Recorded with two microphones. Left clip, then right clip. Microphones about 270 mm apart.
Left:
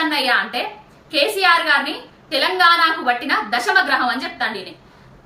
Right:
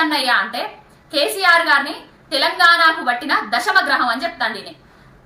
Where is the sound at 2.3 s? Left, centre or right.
Centre.